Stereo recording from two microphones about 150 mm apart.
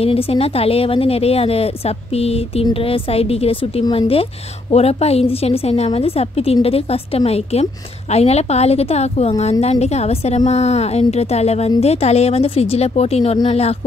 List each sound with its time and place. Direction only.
0.0 s a woman's voice: 40° left (ahead or behind)
3.8 s speech: 25° left (ahead or behind)
4.1 s a woman's voice: 40° left (ahead or behind)